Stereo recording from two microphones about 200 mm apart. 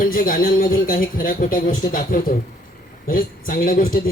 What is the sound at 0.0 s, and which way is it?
A man's voice, 45° left (ahead or behind).